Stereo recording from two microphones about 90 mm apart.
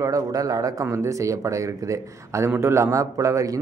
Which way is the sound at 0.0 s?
40° right (ahead or behind).